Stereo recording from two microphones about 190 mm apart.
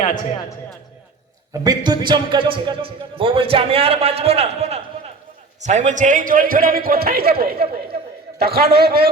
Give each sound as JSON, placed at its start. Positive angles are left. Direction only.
{"t": 0.0, "sound": "a man's voice", "side_deg": 40}
{"t": 1.5, "sound": "a man's voice", "side_deg": -20}